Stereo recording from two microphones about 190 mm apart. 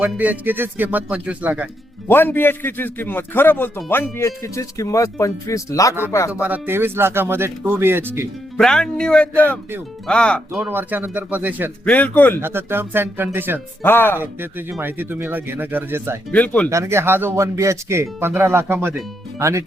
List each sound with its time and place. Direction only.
0.0 s speech: 10° right (ahead or behind)
2.0 s a man's voice: 10° left (ahead or behind)
6.4 s speech: 10° right (ahead or behind)
8.5 s speech: 5° left (ahead or behind)
10.6 s speech: 10° right (ahead or behind)
11.9 s a man's voice: 10° left (ahead or behind)
12.4 s speech: 10° right (ahead or behind)
13.8 s a man's voice: 10° left (ahead or behind)
14.7 s speech: 10° right (ahead or behind)
16.3 s a man's voice: 5° left (ahead or behind)
16.6 s speech: 15° right (ahead or behind)